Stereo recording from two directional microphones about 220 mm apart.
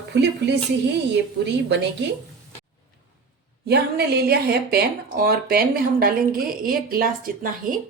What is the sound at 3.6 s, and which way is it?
A woman's voice, 45° right (ahead or behind).